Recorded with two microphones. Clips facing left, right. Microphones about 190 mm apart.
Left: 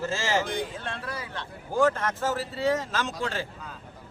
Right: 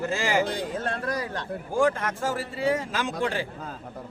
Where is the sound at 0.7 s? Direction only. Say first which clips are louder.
Right 7 dB; 45° right (ahead or behind).